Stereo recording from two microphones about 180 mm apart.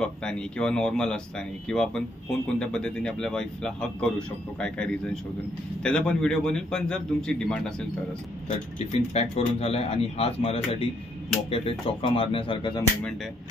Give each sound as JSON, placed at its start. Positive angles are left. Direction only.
{"t": 0.0, "sound": "speech", "side_deg": 5}
{"t": 8.5, "sound": "speech", "side_deg": 40}
{"t": 12.0, "sound": "speech", "side_deg": 30}